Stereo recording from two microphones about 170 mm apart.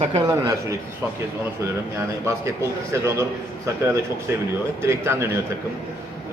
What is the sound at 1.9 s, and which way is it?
A man's voice, 15° right (ahead or behind).